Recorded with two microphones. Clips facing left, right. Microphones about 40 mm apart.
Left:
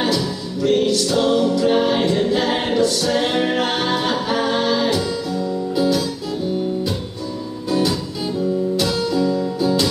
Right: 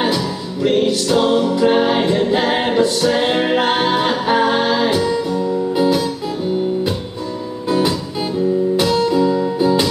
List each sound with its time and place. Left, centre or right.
0.0 s music: right
8.7 s music: right